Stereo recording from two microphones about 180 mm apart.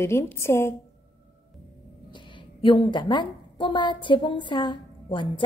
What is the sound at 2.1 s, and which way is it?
A woman's voice, 25° left (ahead or behind).